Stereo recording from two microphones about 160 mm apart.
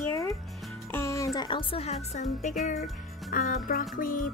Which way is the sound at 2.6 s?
65° left (ahead or behind).